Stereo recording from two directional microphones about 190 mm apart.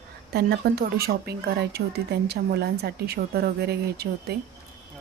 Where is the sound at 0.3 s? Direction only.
60° right (ahead or behind).